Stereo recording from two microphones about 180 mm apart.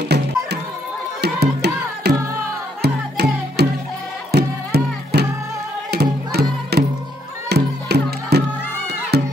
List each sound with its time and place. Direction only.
1.2 s music: 65° right (ahead or behind)